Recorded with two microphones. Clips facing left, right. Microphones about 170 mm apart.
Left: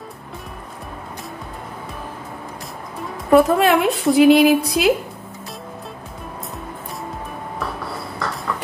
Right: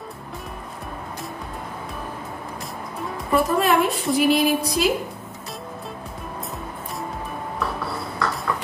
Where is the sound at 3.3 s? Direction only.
80° left.